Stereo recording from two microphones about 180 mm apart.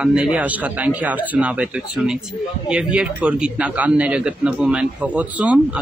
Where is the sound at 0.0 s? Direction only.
5° right (ahead or behind).